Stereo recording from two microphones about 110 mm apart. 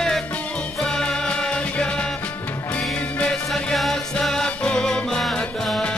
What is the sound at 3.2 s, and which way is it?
Music, 5° left (ahead or behind).